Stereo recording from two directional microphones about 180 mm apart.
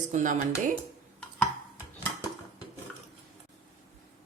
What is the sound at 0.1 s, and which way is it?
Speech, 45° right (ahead or behind).